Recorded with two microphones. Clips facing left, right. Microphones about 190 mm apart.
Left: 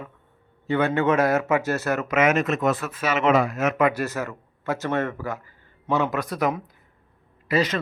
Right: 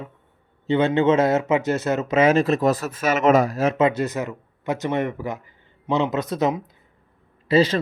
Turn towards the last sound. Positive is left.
turn(degrees=-30)  # may be behind; listen again after turning